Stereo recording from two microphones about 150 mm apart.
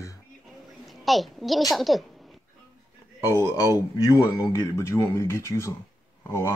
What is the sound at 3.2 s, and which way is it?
A man's voice, 20° left (ahead or behind).